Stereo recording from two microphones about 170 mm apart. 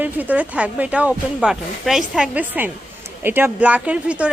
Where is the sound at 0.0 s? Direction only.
10° right (ahead or behind).